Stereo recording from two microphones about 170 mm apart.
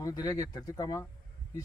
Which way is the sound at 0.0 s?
20° left (ahead or behind).